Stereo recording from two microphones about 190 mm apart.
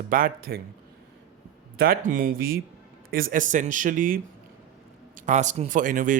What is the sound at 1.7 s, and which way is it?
Speech, 50° right (ahead or behind).